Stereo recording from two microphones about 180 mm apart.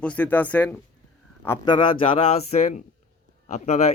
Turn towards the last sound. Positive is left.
turn(degrees=40)  # may be behind; listen again after turning